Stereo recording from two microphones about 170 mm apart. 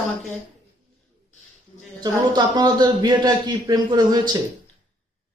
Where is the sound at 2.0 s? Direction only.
25° right (ahead or behind).